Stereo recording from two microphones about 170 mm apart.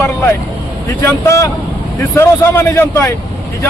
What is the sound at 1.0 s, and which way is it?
A man's voice, 15° left (ahead or behind).